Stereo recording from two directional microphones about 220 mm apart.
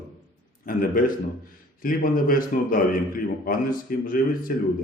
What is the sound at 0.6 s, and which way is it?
Speech, 40° left (ahead or behind).